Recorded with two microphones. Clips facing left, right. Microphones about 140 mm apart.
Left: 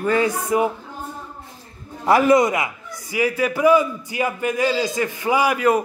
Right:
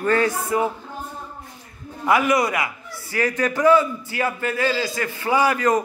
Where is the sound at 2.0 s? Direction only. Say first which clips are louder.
Left 4 dB; 35° left (ahead or behind).